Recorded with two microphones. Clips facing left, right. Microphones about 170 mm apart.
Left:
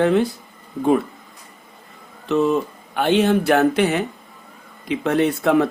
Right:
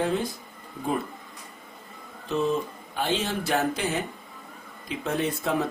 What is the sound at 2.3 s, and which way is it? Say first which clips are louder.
Speech: left 7 dB; 75° left (ahead or behind).